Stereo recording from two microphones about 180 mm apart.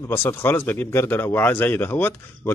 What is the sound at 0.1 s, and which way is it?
A man's voice, 10° left (ahead or behind).